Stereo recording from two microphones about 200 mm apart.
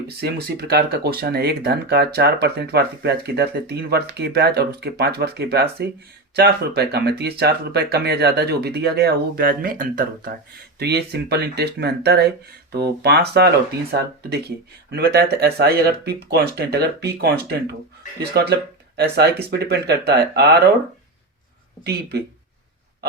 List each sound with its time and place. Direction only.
0.2 s speech: 50° right (ahead or behind)